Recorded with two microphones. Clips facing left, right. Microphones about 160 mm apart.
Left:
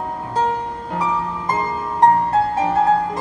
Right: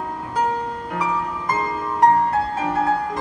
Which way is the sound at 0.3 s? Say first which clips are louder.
Left 1 dB; 25° left (ahead or behind).